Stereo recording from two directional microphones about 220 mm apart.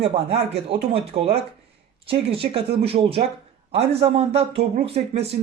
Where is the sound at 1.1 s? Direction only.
25° right (ahead or behind).